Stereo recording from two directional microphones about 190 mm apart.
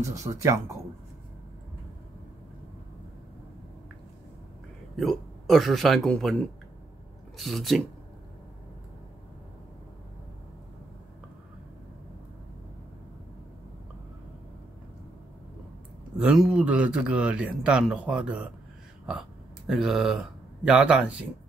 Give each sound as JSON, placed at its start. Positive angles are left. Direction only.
{"t": 0.0, "sound": "speech", "side_deg": -15}
{"t": 4.9, "sound": "speech", "side_deg": 0}
{"t": 16.2, "sound": "speech", "side_deg": -5}
{"t": 19.7, "sound": "speech", "side_deg": 0}